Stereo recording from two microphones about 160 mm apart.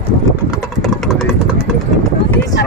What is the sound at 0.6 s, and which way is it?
Vehicle, centre (ahead or behind).